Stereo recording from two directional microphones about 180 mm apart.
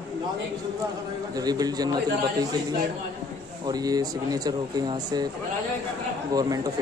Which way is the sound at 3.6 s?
20° right (ahead or behind).